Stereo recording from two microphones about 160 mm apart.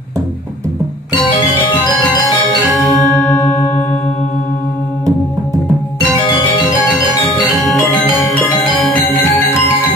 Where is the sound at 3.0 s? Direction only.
5° left (ahead or behind).